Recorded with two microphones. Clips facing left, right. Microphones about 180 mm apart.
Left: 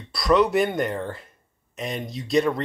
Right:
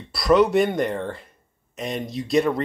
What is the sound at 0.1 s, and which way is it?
Speech, centre (ahead or behind).